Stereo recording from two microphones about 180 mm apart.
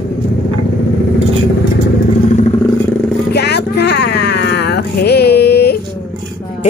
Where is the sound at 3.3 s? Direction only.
65° left (ahead or behind).